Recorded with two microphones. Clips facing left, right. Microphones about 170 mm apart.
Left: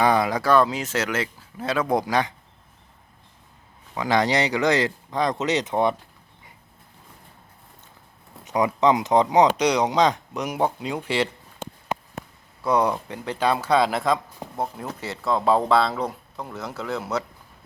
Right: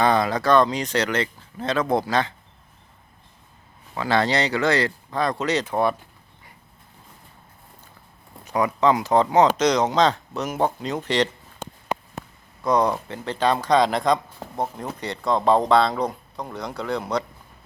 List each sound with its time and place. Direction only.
0.0 s speech: 10° left (ahead or behind)
3.9 s speech: 15° left (ahead or behind)
8.4 s speech: 20° left (ahead or behind)
12.6 s speech: 10° left (ahead or behind)